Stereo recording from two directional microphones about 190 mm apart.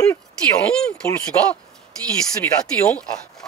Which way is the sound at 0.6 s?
5° left (ahead or behind).